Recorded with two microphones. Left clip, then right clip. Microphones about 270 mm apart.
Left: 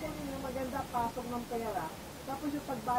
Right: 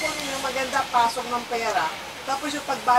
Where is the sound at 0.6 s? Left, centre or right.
Centre.